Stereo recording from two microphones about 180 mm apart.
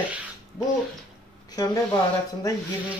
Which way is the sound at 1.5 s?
20° left (ahead or behind).